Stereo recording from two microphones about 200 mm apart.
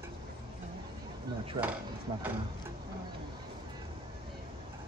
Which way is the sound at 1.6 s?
25° right (ahead or behind).